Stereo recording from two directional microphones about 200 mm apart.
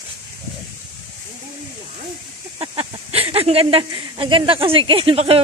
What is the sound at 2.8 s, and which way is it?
Speech, 30° right (ahead or behind).